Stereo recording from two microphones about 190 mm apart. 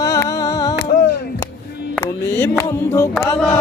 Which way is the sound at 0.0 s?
15° left (ahead or behind).